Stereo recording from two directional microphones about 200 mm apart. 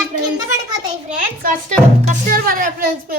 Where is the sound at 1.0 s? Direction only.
45° right (ahead or behind).